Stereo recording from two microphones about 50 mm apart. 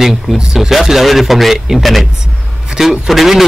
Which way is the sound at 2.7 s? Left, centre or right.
Centre.